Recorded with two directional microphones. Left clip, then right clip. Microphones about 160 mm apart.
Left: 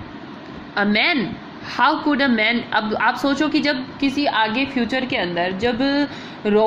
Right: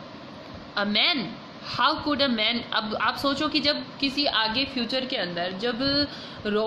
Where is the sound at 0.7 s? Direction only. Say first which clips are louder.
Left 5 dB; 15° left (ahead or behind).